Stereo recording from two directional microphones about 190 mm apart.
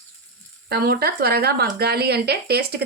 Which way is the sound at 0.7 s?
55° right (ahead or behind).